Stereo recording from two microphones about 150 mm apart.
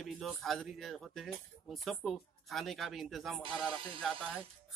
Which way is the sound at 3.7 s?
35° right (ahead or behind).